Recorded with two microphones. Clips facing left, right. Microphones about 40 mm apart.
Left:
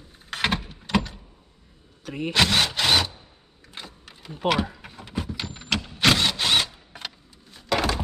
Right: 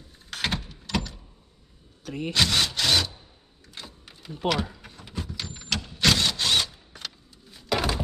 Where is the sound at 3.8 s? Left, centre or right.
Left.